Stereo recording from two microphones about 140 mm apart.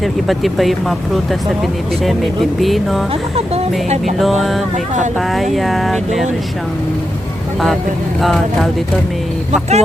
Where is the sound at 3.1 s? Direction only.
45° right (ahead or behind).